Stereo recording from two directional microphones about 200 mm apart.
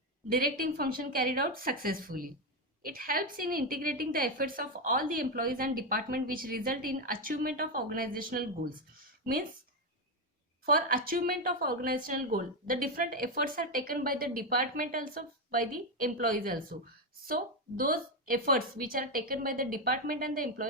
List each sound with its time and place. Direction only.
0.3 s a woman's voice: 45° right (ahead or behind)
10.7 s a woman's voice: 45° right (ahead or behind)